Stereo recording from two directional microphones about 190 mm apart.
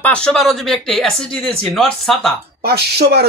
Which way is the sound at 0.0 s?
5° left (ahead or behind).